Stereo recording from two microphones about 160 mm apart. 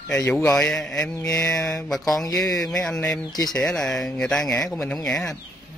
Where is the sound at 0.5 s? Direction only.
5° left (ahead or behind).